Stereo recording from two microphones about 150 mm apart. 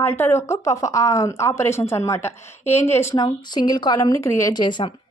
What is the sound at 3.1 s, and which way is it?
A woman's voice, 25° left (ahead or behind).